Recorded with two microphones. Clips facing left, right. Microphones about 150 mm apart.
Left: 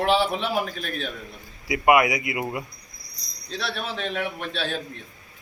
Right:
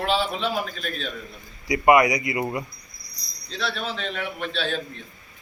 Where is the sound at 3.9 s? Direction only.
15° left (ahead or behind).